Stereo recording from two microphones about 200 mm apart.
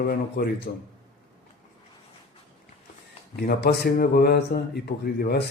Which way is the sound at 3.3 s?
55° left (ahead or behind).